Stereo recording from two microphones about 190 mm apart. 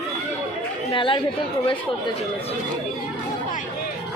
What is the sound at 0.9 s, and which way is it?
Speech, 25° left (ahead or behind).